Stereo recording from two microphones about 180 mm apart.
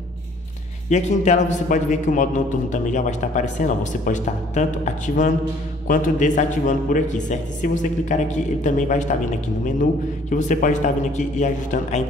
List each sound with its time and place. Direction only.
0.8 s a man's voice: 40° left (ahead or behind)
10.3 s a man's voice: 45° left (ahead or behind)